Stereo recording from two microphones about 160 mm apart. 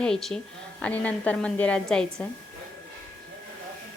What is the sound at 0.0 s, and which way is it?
A woman's voice, centre (ahead or behind).